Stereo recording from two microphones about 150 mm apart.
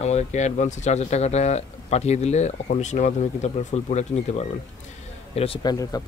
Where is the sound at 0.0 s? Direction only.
50° left (ahead or behind).